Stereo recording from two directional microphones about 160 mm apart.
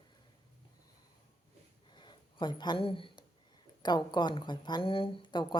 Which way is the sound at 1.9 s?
30° left (ahead or behind).